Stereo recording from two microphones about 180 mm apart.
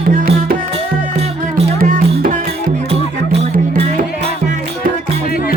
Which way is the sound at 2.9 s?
35° right (ahead or behind).